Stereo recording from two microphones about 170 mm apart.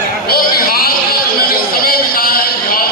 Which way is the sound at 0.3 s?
60° left (ahead or behind).